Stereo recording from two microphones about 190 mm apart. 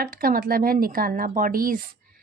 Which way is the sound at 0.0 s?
50° right (ahead or behind).